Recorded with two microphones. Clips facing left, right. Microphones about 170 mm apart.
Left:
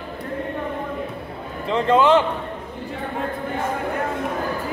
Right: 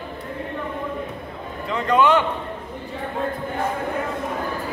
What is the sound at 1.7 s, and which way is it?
Speech, 25° left (ahead or behind).